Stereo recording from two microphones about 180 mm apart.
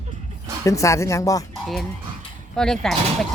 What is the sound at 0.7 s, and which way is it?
Speech, 15° left (ahead or behind).